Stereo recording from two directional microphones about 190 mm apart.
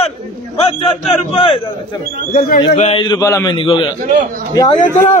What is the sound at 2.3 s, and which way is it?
Speech, 50° left (ahead or behind).